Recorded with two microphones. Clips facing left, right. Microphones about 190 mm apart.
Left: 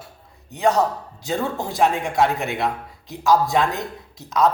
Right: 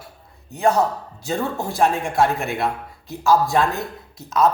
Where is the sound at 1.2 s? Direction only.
20° left (ahead or behind).